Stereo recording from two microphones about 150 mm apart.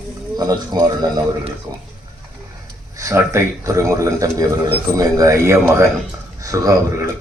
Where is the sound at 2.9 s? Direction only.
20° right (ahead or behind).